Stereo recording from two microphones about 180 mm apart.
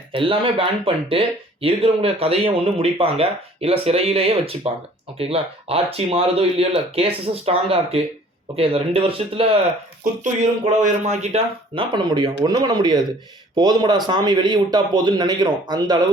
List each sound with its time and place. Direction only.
0.1 s a man's voice: 30° right (ahead or behind)
10.8 s a man's voice: 40° right (ahead or behind); by 16.0 s 25° right (ahead or behind)